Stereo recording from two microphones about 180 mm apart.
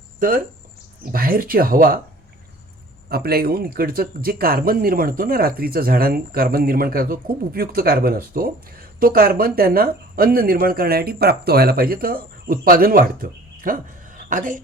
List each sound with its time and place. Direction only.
0.2 s speech: 50° right (ahead or behind)
3.1 s speech: 60° right (ahead or behind)
13.6 s a sound: 50° right (ahead or behind)